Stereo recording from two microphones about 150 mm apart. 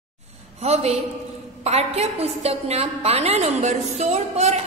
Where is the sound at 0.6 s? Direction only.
45° right (ahead or behind).